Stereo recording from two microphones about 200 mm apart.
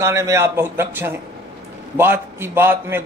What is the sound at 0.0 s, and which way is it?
Speech, 15° right (ahead or behind).